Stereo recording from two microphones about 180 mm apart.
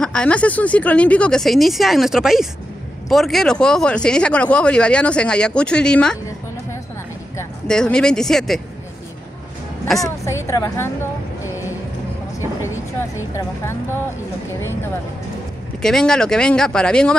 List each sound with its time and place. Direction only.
0.0 s speech: 5° left (ahead or behind)
7.6 s speech: 5° left (ahead or behind)
10.0 s a woman's voice: 15° left (ahead or behind)
12.4 s vehicle: 15° left (ahead or behind)
13.3 s a woman's voice: 15° left (ahead or behind)
15.8 s speech: 5° left (ahead or behind)